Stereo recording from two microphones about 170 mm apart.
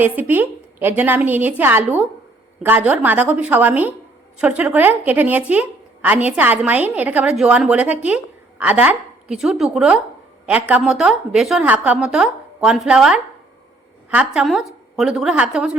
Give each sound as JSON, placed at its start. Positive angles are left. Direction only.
{"t": 0.0, "sound": "a woman's voice", "side_deg": -10}